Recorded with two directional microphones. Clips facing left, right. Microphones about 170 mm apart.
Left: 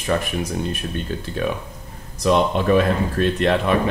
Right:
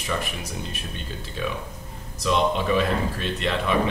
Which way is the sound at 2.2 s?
50° left (ahead or behind).